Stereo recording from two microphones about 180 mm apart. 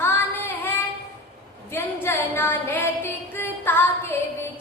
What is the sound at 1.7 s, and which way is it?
Music, 15° left (ahead or behind).